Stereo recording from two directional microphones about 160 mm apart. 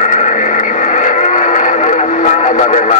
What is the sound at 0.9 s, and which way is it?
Music, 50° left (ahead or behind).